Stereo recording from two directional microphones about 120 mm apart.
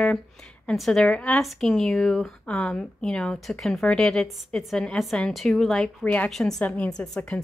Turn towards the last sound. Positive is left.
turn(degrees=10)  # may be behind; listen again after turning